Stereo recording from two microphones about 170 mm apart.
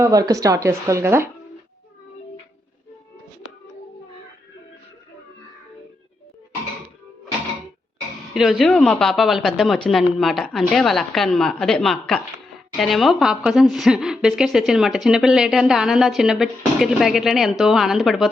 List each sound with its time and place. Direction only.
0.0 s speech: 20° right (ahead or behind)
8.3 s a woman's voice: centre (ahead or behind)